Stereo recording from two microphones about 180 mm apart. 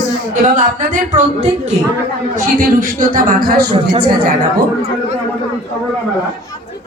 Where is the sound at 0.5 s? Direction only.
45° right (ahead or behind).